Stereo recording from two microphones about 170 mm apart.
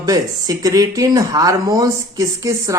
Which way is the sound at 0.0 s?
20° right (ahead or behind).